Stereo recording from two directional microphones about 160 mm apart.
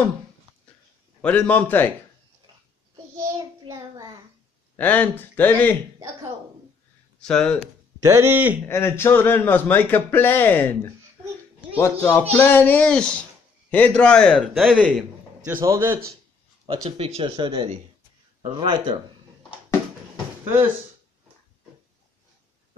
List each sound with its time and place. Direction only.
1.2 s speech: 10° left (ahead or behind)
3.2 s child singing: 20° right (ahead or behind)
4.7 s speech: 10° left (ahead or behind)
7.2 s speech: 5° left (ahead or behind)
8.0 s speech: 15° right (ahead or behind)
8.6 s speech: 15° left (ahead or behind)
15.4 s speech: 15° right (ahead or behind)
17.0 s speech: 35° right (ahead or behind)
20.4 s speech: 10° right (ahead or behind)